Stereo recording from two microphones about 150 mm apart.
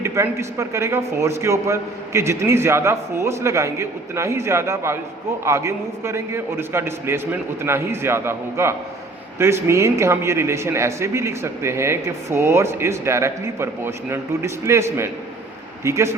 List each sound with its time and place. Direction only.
0.0 s a man's voice: 20° right (ahead or behind)